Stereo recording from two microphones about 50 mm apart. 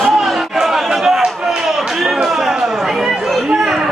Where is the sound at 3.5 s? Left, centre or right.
Centre.